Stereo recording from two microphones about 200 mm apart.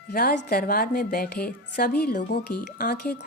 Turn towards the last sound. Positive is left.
turn(degrees=50)  # may be behind; listen again after turning